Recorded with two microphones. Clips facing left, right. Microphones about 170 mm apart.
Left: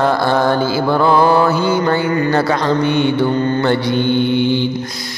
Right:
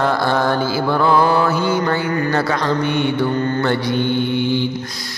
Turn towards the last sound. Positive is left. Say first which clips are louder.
# left 4 dB
turn(degrees=25)  # may be behind; listen again after turning